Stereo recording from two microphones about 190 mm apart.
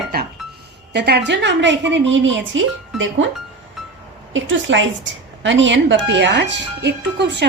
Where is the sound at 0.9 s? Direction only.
60° right (ahead or behind); by 2.6 s 80° right.